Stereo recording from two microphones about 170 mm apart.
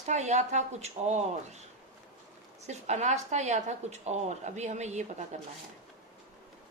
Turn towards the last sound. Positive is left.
turn(degrees=-45)  # may be behind; listen again after turning